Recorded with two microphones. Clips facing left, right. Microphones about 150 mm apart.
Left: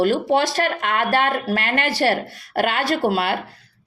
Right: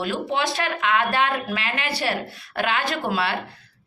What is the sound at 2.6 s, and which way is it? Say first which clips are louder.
Speech: left 5 dB; 45° left (ahead or behind).